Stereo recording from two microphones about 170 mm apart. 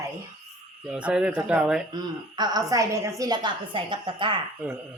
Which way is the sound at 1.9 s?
25° right (ahead or behind).